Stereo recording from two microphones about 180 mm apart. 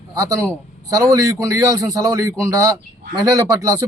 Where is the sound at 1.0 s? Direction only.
20° right (ahead or behind).